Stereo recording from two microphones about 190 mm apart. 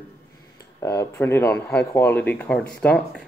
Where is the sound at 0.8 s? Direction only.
15° left (ahead or behind).